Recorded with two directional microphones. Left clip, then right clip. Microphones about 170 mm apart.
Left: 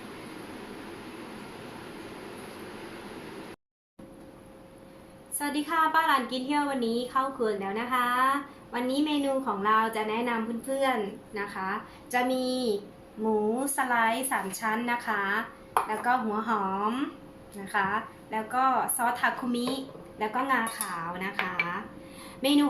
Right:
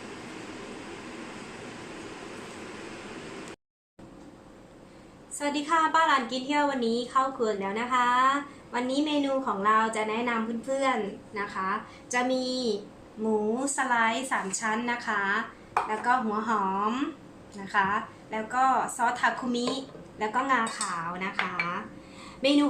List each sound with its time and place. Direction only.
5.4 s a woman's voice: centre (ahead or behind)